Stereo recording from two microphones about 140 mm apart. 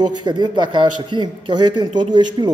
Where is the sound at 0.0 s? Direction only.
30° right (ahead or behind).